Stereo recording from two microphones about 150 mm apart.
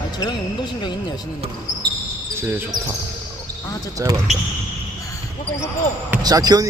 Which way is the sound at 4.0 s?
20° right (ahead or behind).